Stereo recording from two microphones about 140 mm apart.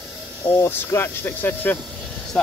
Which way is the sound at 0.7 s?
15° left (ahead or behind).